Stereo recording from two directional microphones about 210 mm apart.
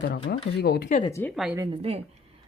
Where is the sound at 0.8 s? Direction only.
30° left (ahead or behind).